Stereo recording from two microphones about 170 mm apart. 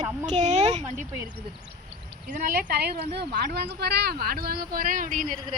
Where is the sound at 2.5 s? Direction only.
65° right (ahead or behind).